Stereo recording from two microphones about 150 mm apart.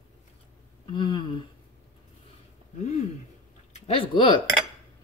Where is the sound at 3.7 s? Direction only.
40° left (ahead or behind).